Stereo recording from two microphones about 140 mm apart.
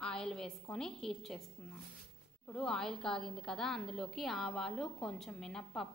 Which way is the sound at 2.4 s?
5° left (ahead or behind).